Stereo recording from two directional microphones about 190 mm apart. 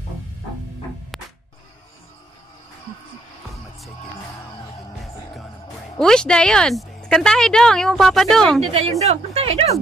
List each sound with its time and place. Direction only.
1.1 s music: centre (ahead or behind)
5.9 s speech: 5° left (ahead or behind)
8.7 s a woman's voice: 35° right (ahead or behind)